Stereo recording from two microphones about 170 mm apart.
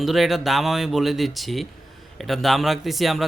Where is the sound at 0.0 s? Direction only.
Centre (ahead or behind).